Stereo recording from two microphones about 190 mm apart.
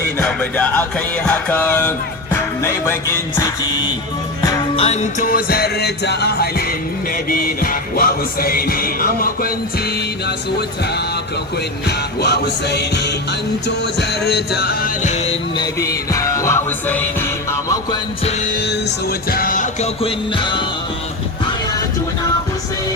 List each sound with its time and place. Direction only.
0.2 s music: 10° left (ahead or behind)
4.8 s music: 35° left (ahead or behind); by 6.5 s 60° left (ahead or behind)
7.3 s music: 50° left (ahead or behind)
11.9 s music: 60° left (ahead or behind)
15.1 s music: 30° left (ahead or behind); by 17.2 s 10° left (ahead or behind)
18.5 s music: 60° left (ahead or behind)
20.0 s music: 30° left (ahead or behind)